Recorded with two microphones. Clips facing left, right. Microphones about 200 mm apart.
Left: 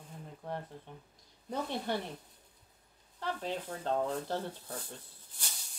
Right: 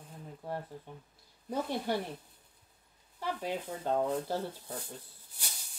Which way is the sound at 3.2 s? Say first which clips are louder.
Right 1 dB; 10° right (ahead or behind).